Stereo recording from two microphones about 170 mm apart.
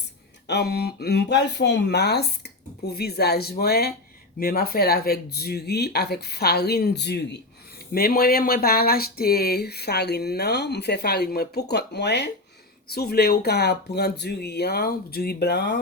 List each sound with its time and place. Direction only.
0.4 s speech: 75° left (ahead or behind)
7.9 s speech: 65° left (ahead or behind); by 12.3 s 85° left
12.9 s speech: 70° left (ahead or behind)